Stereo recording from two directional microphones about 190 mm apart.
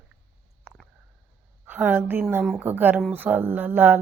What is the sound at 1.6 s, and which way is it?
Speech, 10° right (ahead or behind).